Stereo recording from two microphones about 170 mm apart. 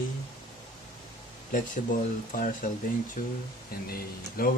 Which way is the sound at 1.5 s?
50° left (ahead or behind).